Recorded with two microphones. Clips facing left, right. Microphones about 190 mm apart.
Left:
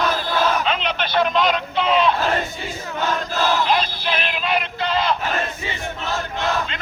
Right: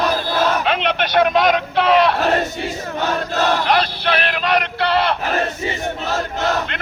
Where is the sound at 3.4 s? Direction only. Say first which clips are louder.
Right 2 dB; 65° right (ahead or behind).